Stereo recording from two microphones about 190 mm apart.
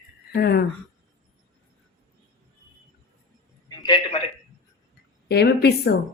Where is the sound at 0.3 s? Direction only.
55° left (ahead or behind).